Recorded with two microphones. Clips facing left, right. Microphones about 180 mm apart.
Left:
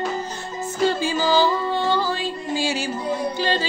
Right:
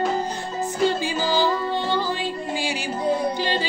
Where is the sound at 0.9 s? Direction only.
15° right (ahead or behind).